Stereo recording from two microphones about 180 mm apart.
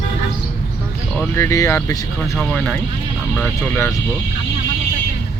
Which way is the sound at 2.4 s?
5° left (ahead or behind).